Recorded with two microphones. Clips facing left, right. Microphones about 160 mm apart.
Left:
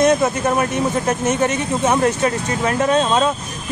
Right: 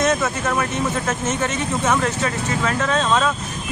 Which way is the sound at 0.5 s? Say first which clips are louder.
Left 4 dB; 20° left (ahead or behind).